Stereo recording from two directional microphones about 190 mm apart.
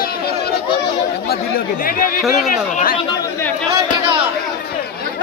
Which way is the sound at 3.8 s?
25° right (ahead or behind).